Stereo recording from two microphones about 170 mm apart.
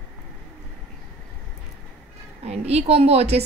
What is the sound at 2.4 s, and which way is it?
Speech, 40° right (ahead or behind).